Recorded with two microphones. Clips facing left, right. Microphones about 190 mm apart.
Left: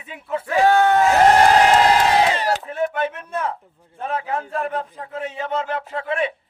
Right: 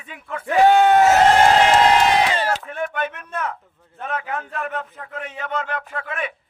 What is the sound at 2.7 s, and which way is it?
A man's voice, 30° left (ahead or behind).